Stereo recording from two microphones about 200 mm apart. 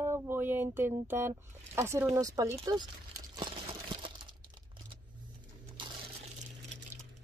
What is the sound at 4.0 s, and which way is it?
Crumpling, 25° right (ahead or behind).